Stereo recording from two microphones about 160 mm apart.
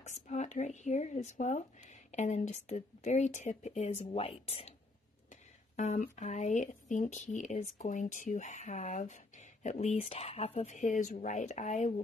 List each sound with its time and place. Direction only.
0.0 s a sound: 45° left (ahead or behind)
0.6 s speech: 45° left (ahead or behind)
5.3 s speech: 50° left (ahead or behind)